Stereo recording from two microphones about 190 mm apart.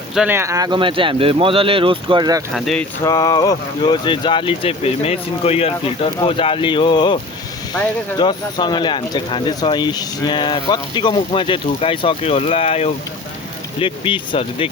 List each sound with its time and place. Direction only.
0.1 s speech: 5° right (ahead or behind); by 2.4 s 20° right (ahead or behind)
2.6 s speech: centre (ahead or behind)
3.0 s speech: 20° left (ahead or behind)
8.2 s speech: 25° left (ahead or behind)